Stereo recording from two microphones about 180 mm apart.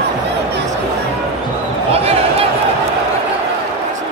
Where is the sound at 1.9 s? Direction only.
35° right (ahead or behind).